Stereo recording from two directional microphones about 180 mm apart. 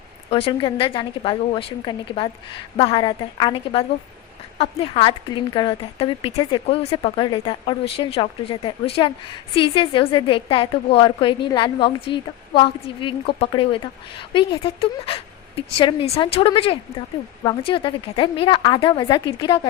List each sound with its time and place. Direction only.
0.3 s speech: 30° left (ahead or behind)